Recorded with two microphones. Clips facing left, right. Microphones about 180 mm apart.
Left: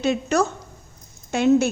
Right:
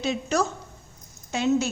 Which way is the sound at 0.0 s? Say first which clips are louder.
Left 4 dB; 60° left (ahead or behind).